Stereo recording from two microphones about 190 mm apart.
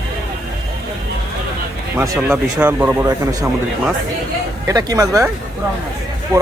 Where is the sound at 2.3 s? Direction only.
10° right (ahead or behind).